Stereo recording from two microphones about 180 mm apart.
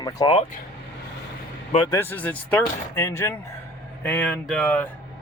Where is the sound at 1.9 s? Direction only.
10° left (ahead or behind).